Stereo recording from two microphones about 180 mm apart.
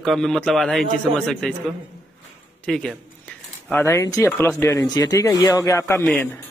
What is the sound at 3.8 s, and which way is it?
Speech, 15° left (ahead or behind).